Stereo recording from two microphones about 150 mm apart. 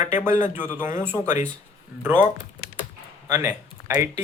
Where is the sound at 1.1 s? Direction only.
55° left (ahead or behind).